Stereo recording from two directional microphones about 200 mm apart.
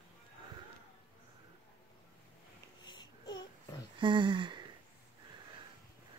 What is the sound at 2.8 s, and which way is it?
Baby cry, 20° left (ahead or behind).